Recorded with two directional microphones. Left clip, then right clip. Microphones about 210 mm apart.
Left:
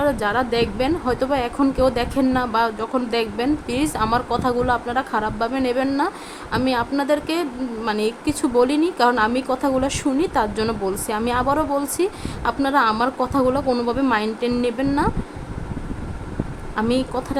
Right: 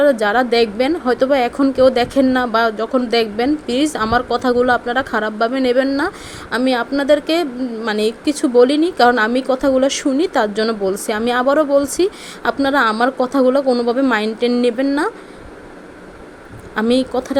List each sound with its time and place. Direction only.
0.0 s a woman's voice: 15° right (ahead or behind)
16.7 s speech: 20° right (ahead or behind)